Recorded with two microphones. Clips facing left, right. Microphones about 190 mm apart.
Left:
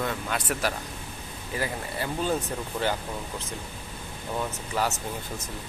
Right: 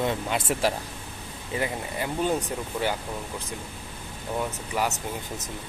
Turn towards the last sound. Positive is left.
turn(degrees=-15)  # may be behind; listen again after turning